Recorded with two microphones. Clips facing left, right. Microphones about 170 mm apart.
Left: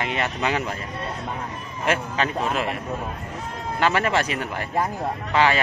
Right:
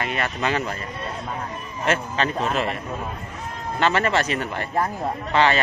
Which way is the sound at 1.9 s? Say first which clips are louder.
Right 1 dB; 10° left (ahead or behind).